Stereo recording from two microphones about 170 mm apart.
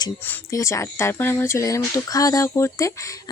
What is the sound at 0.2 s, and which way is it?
Speech, 10° left (ahead or behind).